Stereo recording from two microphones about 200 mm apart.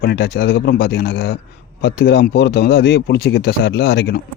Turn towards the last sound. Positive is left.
turn(degrees=55)  # may be behind; listen again after turning